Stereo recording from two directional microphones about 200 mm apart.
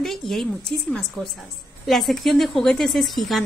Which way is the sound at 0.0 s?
Centre (ahead or behind).